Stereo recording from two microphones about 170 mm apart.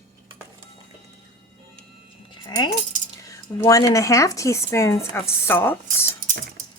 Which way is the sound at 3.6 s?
20° left (ahead or behind).